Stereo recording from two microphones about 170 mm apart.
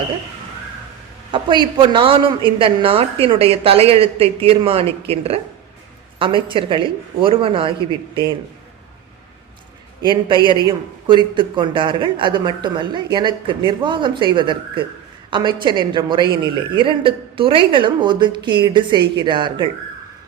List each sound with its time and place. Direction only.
1.8 s speech: 30° right (ahead or behind)
10.0 s speech: 30° right (ahead or behind)